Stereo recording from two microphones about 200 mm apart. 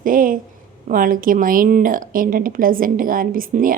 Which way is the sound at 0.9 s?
45° right (ahead or behind).